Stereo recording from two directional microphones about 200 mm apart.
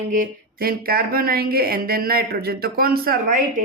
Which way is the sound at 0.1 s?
45° right (ahead or behind).